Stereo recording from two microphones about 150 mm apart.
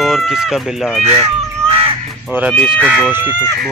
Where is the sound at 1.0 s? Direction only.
40° right (ahead or behind).